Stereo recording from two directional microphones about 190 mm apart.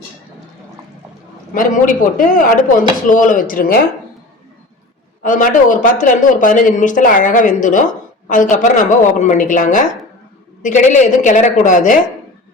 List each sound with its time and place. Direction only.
1.5 s speech: 45° left (ahead or behind)
5.2 s a woman's voice: 45° left (ahead or behind)